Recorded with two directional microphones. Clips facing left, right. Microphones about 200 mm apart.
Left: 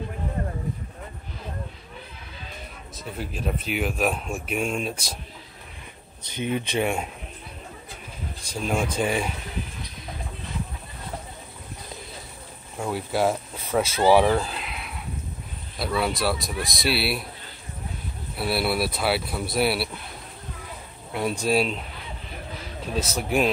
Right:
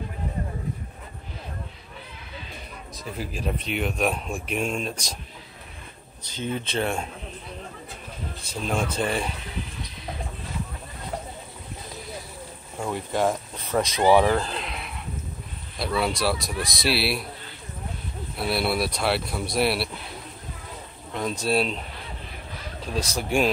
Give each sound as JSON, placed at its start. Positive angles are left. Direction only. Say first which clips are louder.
{"t": 3.1, "sound": "speech", "louder": "even", "side_deg": 0}
{"t": 6.2, "sound": "speech", "louder": "left 3 dB", "side_deg": 15}
{"t": 8.4, "sound": "speech", "louder": "left 1 dB", "side_deg": 10}
{"t": 12.7, "sound": "speech", "louder": "left 1 dB", "side_deg": 5}
{"t": 18.3, "sound": "speech", "louder": "even", "side_deg": 0}
{"t": 21.1, "sound": "a sound", "louder": "left 2 dB", "side_deg": 10}
{"t": 21.5, "sound": "speech", "louder": "left 1 dB", "side_deg": 5}
{"t": 22.9, "sound": "speech", "louder": "even", "side_deg": 5}